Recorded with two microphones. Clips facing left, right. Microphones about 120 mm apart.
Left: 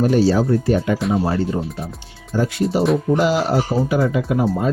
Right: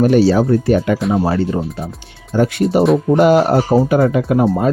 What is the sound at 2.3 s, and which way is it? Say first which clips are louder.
Speech: right 5 dB; 65° right (ahead or behind).